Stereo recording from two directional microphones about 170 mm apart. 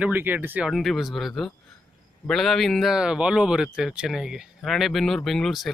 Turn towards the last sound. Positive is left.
turn(degrees=0)  # may be behind; listen again after turning